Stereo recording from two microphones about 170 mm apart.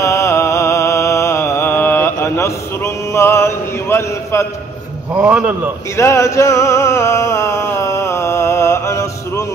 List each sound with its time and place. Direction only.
0.0 s music: 15° left (ahead or behind)
5.1 s a man's voice: 5° right (ahead or behind)
5.9 s music: 15° left (ahead or behind)